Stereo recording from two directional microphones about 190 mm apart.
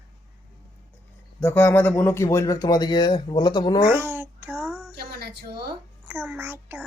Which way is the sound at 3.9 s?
10° right (ahead or behind).